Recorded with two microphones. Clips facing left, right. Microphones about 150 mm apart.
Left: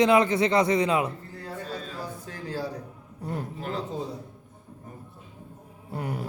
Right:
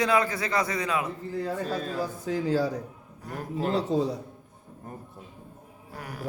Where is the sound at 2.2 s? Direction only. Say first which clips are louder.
Right 9 dB; 90° right.